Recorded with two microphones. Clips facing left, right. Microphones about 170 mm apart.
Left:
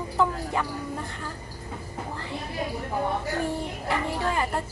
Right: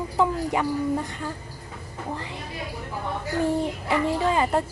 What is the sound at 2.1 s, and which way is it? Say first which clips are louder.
Speech: right 2 dB; 15° right (ahead or behind).